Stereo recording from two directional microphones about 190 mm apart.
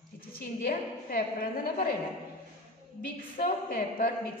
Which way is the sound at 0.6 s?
50° left (ahead or behind).